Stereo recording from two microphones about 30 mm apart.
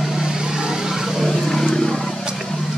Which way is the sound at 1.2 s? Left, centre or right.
Centre.